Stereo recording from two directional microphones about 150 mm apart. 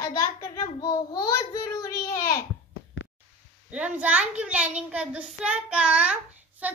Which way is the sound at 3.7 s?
10° right (ahead or behind).